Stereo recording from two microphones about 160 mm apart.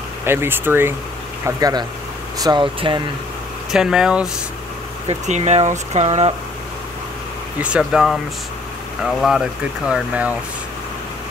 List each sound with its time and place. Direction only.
0.2 s speech: 15° right (ahead or behind); by 3.0 s 30° right (ahead or behind)
3.7 s speech: 5° right (ahead or behind)
5.0 s speech: 45° right (ahead or behind)
7.6 s speech: 5° right (ahead or behind)